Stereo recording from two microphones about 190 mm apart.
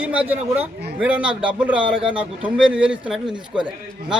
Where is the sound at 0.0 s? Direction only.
5° right (ahead or behind).